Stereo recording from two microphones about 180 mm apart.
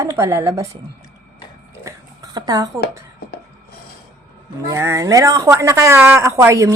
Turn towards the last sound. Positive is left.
turn(degrees=-15)  # may be behind; listen again after turning